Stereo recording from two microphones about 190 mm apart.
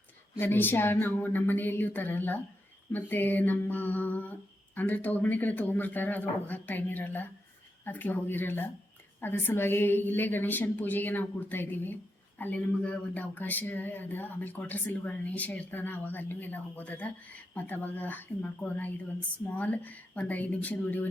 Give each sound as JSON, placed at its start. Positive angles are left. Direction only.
{"t": 0.3, "sound": "speech", "side_deg": 10}